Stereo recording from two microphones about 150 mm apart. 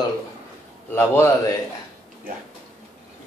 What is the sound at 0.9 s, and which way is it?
Speech, 15° left (ahead or behind).